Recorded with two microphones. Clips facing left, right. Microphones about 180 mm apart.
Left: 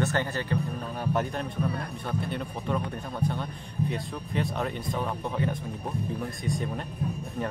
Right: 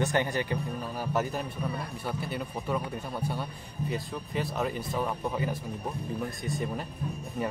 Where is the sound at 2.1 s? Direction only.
5° right (ahead or behind).